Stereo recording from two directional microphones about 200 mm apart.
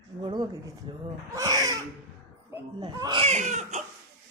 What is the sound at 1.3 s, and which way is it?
Baby cry, 15° right (ahead or behind).